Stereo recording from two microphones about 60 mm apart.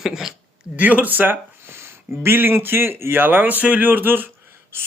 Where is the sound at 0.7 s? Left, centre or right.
Right.